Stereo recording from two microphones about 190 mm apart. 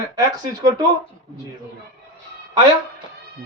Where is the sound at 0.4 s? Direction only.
20° right (ahead or behind).